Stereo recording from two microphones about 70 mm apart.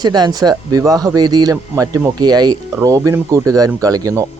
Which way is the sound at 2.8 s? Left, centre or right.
Right.